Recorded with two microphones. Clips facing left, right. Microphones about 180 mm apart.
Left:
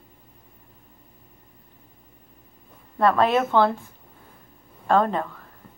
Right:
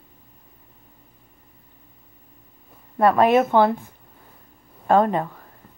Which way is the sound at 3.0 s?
15° right (ahead or behind).